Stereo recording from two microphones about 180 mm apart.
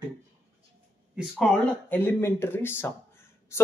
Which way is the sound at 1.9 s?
10° left (ahead or behind).